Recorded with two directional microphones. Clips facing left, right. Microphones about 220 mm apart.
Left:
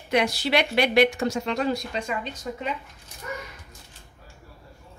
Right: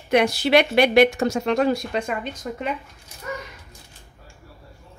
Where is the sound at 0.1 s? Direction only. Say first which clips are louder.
Right 5 dB; 55° right (ahead or behind).